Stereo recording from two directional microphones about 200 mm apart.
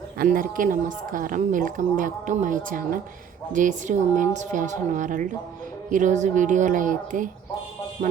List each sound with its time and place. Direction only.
0.2 s a woman's voice: 45° right (ahead or behind)